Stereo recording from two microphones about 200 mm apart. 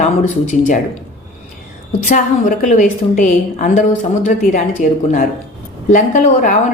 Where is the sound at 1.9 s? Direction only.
40° left (ahead or behind).